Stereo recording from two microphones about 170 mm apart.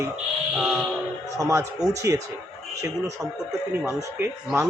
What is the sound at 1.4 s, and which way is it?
Speech, 20° right (ahead or behind).